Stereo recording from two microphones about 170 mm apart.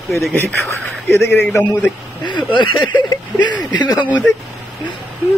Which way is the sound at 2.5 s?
30° left (ahead or behind).